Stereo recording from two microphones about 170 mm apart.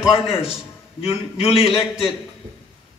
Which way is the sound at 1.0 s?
35° left (ahead or behind).